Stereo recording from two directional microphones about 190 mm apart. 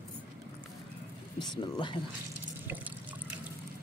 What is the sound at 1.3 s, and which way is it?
Speech, 20° left (ahead or behind).